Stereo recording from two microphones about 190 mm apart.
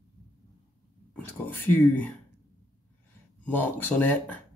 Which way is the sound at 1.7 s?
10° left (ahead or behind).